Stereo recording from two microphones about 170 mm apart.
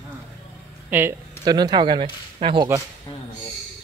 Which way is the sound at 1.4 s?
25° right (ahead or behind).